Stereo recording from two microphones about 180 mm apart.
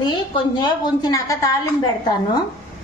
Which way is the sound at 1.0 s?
20° left (ahead or behind).